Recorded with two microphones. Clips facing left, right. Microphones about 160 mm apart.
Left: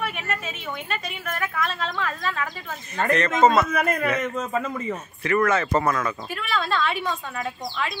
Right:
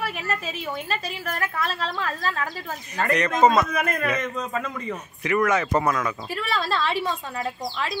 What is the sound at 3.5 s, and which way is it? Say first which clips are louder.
A man's voice: left 1 dB; centre (ahead or behind).